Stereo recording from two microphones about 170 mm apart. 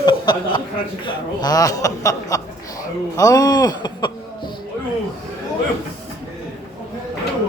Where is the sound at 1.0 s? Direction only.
25° left (ahead or behind).